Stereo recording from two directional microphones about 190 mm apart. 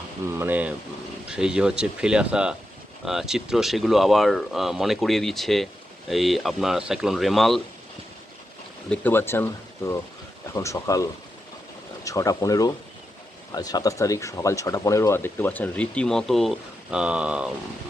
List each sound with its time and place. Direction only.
0.3 s speech: 10° right (ahead or behind)
8.9 s speech: 10° left (ahead or behind); by 17.5 s 5° right (ahead or behind)